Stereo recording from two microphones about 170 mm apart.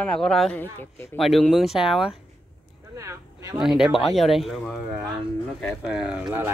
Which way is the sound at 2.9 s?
20° right (ahead or behind).